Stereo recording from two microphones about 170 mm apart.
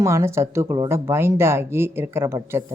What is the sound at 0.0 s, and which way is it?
Speech, 15° right (ahead or behind).